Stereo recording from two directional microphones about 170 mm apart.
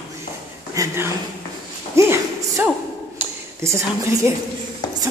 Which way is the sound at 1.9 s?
15° right (ahead or behind).